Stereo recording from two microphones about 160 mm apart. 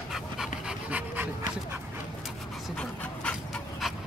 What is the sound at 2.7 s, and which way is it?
Dog, 5° left (ahead or behind).